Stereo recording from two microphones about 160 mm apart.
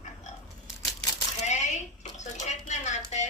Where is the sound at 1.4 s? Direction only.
45° left (ahead or behind).